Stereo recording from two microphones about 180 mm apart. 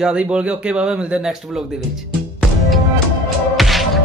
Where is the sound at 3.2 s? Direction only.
Centre (ahead or behind).